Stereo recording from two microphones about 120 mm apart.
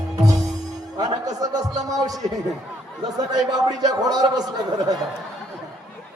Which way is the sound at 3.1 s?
30° right (ahead or behind).